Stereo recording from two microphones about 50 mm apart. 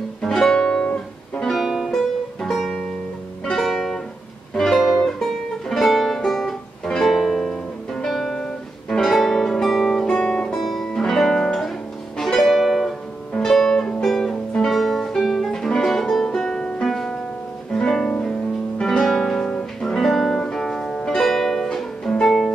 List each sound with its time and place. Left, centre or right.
0.2 s music: centre
1.4 s music: centre
10.0 s music: left
10.5 s music: centre
16.8 s music: centre